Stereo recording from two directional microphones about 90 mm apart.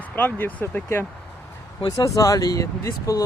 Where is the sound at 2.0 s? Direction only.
40° left (ahead or behind).